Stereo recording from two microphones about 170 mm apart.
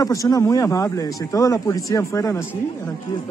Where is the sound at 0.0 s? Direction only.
20° left (ahead or behind).